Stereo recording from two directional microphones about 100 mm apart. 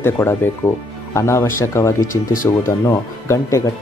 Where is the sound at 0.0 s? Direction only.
25° left (ahead or behind).